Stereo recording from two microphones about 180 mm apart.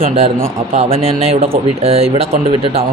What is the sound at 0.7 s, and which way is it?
Speech, 35° right (ahead or behind).